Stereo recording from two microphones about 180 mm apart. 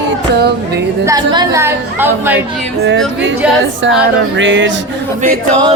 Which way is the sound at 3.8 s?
90° right.